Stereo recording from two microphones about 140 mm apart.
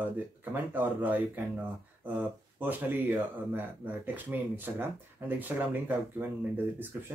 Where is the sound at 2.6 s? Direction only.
10° right (ahead or behind).